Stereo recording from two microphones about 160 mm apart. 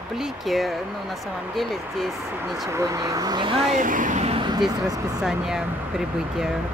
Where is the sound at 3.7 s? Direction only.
55° right (ahead or behind); by 4.6 s 35° right (ahead or behind).